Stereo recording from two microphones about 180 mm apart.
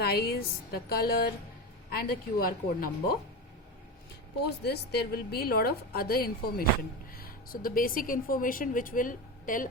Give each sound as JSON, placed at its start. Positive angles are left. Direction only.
{"t": 0.0, "sound": "a woman's voice", "side_deg": 60}
{"t": 4.4, "sound": "a woman's voice", "side_deg": 65}